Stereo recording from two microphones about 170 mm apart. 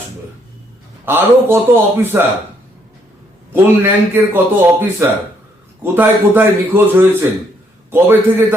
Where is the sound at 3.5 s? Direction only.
10° right (ahead or behind).